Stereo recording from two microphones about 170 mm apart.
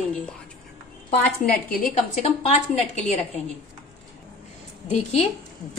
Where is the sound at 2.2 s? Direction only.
40° left (ahead or behind).